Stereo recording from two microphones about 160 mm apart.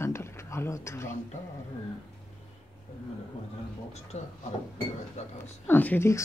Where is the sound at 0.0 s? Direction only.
15° left (ahead or behind).